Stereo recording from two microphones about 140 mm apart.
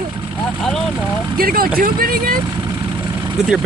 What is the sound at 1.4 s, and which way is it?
Speech, 90° right.